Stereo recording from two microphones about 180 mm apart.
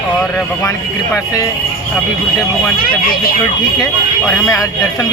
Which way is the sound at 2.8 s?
55° left (ahead or behind).